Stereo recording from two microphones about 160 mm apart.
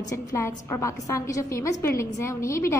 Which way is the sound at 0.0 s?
20° left (ahead or behind).